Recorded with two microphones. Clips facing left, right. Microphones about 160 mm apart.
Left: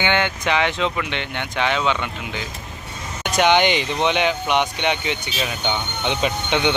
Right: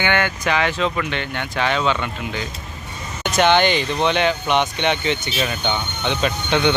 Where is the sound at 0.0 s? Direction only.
20° left (ahead or behind).